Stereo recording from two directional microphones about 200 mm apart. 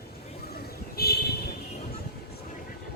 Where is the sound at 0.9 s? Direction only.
50° left (ahead or behind).